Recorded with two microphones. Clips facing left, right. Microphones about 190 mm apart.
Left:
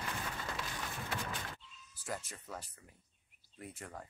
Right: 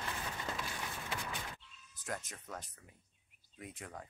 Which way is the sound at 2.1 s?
10° left (ahead or behind).